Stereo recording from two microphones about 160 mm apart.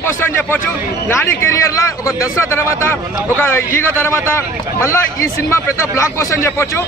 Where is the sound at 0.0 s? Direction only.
15° left (ahead or behind).